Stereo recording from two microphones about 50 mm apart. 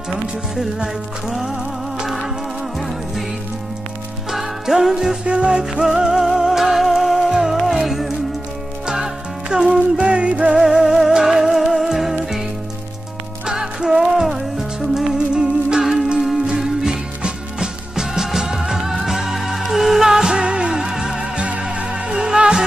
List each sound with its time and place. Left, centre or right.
1.3 s music: centre
4.3 s music: centre
5.2 s music: right
10.6 s music: centre
13.5 s music: centre
15.1 s music: centre